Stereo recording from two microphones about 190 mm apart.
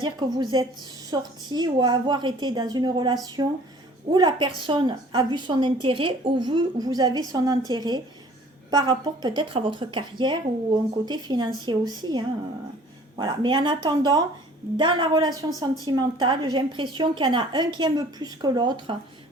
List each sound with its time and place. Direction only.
0.0 s a woman's voice: 20° right (ahead or behind)